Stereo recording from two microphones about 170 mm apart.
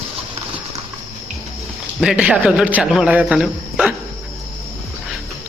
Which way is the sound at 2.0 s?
5° right (ahead or behind).